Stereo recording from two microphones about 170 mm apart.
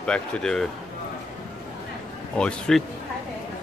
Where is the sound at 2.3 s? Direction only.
5° left (ahead or behind).